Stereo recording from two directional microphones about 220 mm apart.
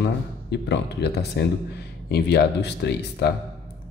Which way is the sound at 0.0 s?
50° left (ahead or behind).